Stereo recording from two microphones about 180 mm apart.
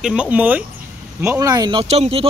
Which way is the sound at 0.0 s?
5° right (ahead or behind).